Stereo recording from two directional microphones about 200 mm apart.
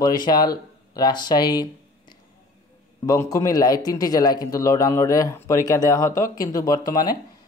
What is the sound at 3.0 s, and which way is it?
A man's voice, 15° left (ahead or behind).